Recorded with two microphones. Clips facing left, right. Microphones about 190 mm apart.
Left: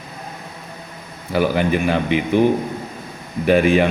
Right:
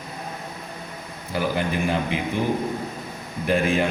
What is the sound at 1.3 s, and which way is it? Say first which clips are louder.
Speech: left 7 dB; 70° left (ahead or behind).